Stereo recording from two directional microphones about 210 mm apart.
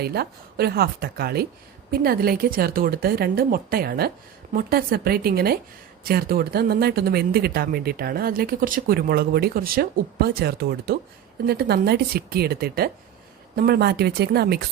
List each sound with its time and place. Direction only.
0.0 s speech: 50° right (ahead or behind)